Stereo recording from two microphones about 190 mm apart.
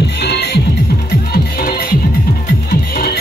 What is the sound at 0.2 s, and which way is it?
Music, 60° left (ahead or behind).